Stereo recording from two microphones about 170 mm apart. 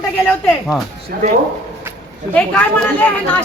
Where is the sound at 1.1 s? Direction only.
60° right (ahead or behind).